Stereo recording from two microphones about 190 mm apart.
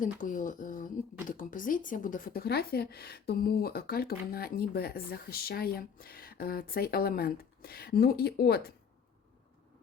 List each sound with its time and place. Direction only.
0.0 s speech: 45° left (ahead or behind)